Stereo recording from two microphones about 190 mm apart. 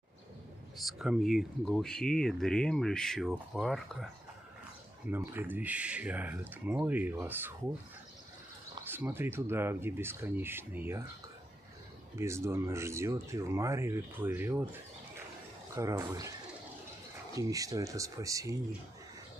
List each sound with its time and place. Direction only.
0.7 s speech: centre (ahead or behind)
5.1 s speech: 10° right (ahead or behind)
8.8 s speech: 10° right (ahead or behind)
12.2 s speech: 15° right (ahead or behind)
17.4 s speech: 20° right (ahead or behind)